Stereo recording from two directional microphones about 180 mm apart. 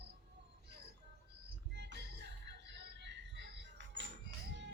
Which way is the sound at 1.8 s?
70° right (ahead or behind).